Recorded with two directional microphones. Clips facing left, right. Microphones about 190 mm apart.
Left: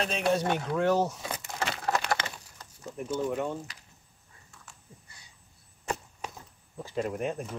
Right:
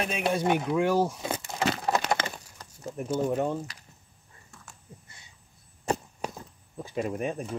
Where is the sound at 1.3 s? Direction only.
30° right (ahead or behind).